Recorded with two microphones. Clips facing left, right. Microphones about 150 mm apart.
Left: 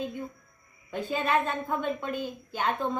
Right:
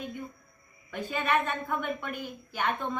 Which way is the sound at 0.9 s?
25° left (ahead or behind).